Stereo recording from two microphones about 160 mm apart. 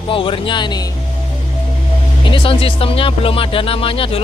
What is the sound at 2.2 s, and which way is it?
Speech, 30° left (ahead or behind).